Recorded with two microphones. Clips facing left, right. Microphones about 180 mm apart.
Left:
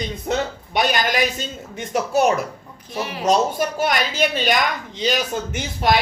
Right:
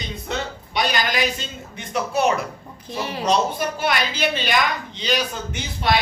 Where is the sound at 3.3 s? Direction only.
45° left (ahead or behind).